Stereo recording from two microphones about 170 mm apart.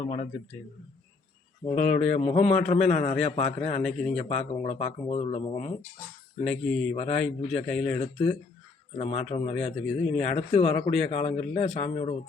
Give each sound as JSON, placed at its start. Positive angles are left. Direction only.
{"t": 0.0, "sound": "speech", "side_deg": 40}
{"t": 1.6, "sound": "speech", "side_deg": 40}
{"t": 3.8, "sound": "speech", "side_deg": 0}
{"t": 4.2, "sound": "speech", "side_deg": 40}
{"t": 6.4, "sound": "speech", "side_deg": 0}
{"t": 6.9, "sound": "speech", "side_deg": 40}
{"t": 7.7, "sound": "speech", "side_deg": 5}
{"t": 7.9, "sound": "speech", "side_deg": 35}